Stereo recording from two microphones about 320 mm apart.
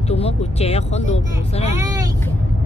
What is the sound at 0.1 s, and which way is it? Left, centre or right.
Speech, centre.